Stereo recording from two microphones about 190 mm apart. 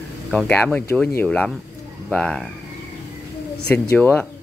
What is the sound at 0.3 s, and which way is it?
Speech, 5° left (ahead or behind).